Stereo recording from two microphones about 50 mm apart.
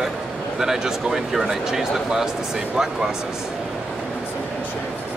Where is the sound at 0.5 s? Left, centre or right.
Centre.